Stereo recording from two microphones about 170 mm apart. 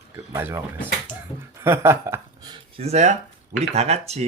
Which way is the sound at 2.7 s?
40° right (ahead or behind).